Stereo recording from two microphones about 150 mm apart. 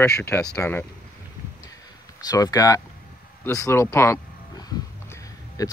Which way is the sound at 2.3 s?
25° left (ahead or behind).